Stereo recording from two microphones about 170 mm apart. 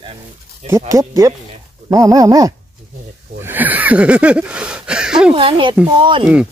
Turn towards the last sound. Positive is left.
turn(degrees=-30)  # may be behind; listen again after turning